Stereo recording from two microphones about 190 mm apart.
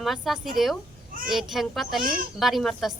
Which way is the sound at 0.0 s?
Centre (ahead or behind).